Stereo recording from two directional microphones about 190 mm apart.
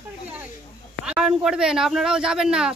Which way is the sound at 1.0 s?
5° right (ahead or behind).